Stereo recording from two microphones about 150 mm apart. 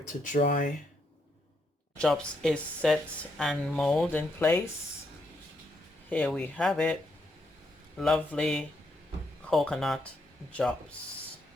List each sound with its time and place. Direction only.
0.2 s speech: 60° left (ahead or behind)
2.0 s speech: 5° left (ahead or behind)
4.4 s speech: 15° left (ahead or behind)
6.1 s speech: 10° left (ahead or behind)
7.9 s speech: 5° left (ahead or behind)